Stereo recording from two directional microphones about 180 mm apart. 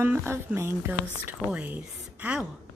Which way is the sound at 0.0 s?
15° right (ahead or behind).